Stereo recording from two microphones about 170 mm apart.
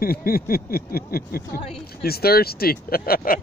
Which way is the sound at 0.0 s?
60° left (ahead or behind).